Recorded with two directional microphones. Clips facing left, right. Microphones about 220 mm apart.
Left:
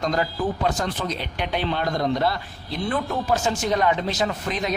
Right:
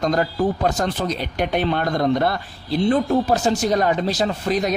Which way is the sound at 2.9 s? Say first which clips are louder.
Right 5 dB; 35° right (ahead or behind).